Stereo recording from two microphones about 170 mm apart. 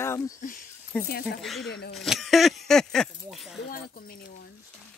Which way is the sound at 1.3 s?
Centre (ahead or behind).